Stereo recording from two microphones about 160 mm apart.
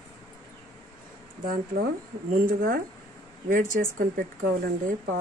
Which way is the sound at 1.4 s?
65° right (ahead or behind).